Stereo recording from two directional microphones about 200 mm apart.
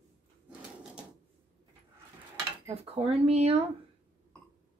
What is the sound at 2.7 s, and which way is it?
Speech, 30° right (ahead or behind).